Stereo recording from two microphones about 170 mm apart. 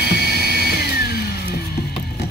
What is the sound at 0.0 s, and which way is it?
Music, 70° left (ahead or behind).